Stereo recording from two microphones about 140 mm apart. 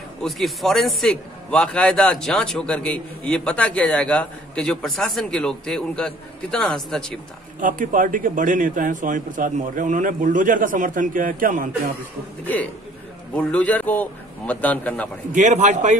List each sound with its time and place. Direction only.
0.2 s a man's voice: centre (ahead or behind)
7.6 s a man's voice: 70° right (ahead or behind)
13.3 s a man's voice: 10° left (ahead or behind)
15.3 s a man's voice: 60° right (ahead or behind)